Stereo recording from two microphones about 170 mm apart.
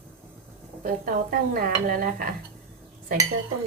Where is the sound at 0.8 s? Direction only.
55° right (ahead or behind).